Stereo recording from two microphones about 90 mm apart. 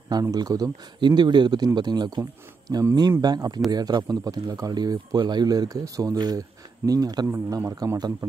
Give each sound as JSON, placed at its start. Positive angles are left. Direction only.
{"t": 0.1, "sound": "speech", "side_deg": -45}
{"t": 7.2, "sound": "a man's voice", "side_deg": -25}
{"t": 7.5, "sound": "a man's voice", "side_deg": -40}